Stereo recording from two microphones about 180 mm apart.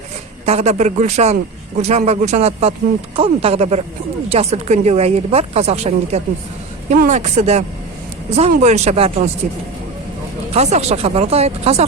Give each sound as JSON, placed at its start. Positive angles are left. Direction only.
{"t": 0.4, "sound": "speech", "side_deg": -35}
{"t": 10.5, "sound": "speech", "side_deg": -40}